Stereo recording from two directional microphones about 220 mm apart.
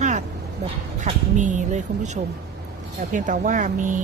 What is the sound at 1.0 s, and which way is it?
Speech, 35° right (ahead or behind).